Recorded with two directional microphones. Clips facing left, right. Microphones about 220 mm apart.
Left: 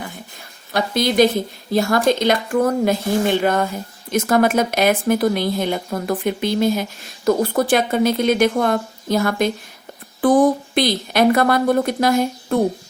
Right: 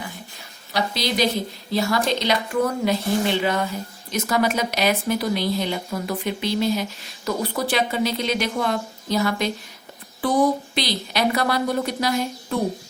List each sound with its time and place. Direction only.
0.7 s speech: 50° left (ahead or behind)